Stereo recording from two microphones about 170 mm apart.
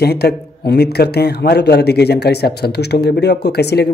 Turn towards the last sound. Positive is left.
turn(degrees=75)  # may be behind; listen again after turning